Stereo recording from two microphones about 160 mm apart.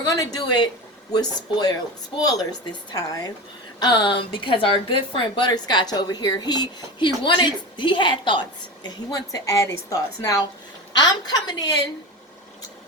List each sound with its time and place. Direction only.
0.0 s a woman's voice: 25° left (ahead or behind)